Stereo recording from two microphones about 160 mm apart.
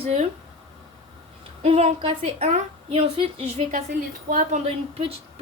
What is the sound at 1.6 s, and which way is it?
A woman's voice, 40° right (ahead or behind).